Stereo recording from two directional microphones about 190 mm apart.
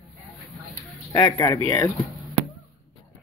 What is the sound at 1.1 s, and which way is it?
Speech, 20° left (ahead or behind).